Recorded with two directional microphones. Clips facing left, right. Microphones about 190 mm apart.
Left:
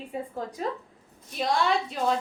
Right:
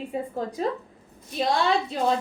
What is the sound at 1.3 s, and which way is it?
Speech, 30° right (ahead or behind).